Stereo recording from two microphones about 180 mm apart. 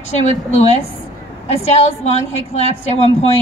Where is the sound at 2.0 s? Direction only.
35° left (ahead or behind).